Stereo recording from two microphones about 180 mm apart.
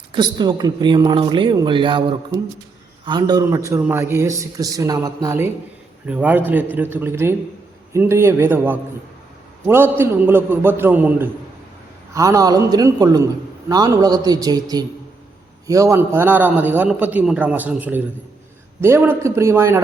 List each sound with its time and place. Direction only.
0.1 s a man's voice: 25° right (ahead or behind)